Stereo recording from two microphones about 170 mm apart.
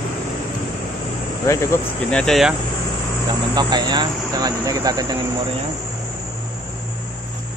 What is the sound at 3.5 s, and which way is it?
Speech, 25° right (ahead or behind).